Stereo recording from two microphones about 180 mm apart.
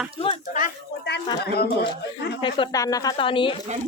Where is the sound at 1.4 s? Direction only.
65° left (ahead or behind).